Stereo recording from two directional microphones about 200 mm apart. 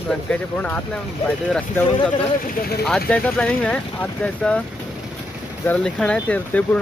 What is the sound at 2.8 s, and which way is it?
Speech, 5° left (ahead or behind).